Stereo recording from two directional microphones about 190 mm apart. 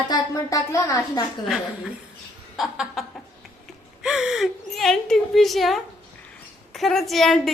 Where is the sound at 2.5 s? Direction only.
Centre (ahead or behind).